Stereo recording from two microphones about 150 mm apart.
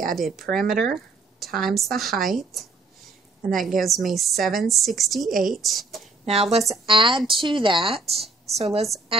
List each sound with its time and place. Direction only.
0.1 s a woman's voice: centre (ahead or behind)
6.2 s a woman's voice: 45° right (ahead or behind)